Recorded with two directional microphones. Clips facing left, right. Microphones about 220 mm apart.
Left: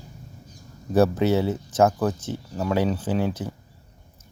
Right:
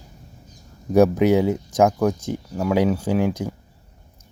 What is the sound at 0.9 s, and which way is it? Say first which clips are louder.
Speech: right 4 dB; 15° right (ahead or behind).